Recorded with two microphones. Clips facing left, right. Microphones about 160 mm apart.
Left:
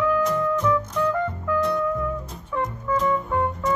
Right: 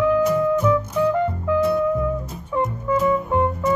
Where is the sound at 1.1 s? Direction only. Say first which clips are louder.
Right 4 dB; 20° right (ahead or behind).